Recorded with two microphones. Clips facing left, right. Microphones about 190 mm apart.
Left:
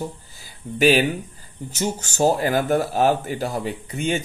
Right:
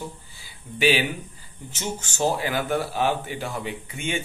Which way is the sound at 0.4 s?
45° left (ahead or behind).